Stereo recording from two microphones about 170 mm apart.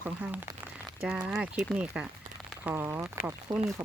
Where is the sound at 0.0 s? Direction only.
10° right (ahead or behind).